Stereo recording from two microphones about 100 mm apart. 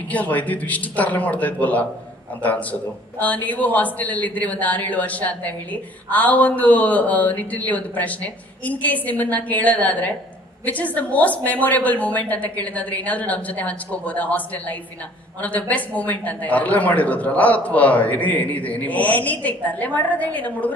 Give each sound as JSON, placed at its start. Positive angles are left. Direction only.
{"t": 0.1, "sound": "a man's voice", "side_deg": 15}